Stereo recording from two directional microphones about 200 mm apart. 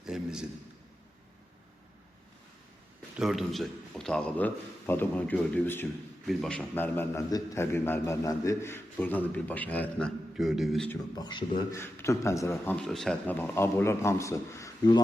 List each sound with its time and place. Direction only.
0.0 s a sound: 5° right (ahead or behind)
3.2 s a man's voice: centre (ahead or behind)
10.8 s a man's voice: 20° left (ahead or behind)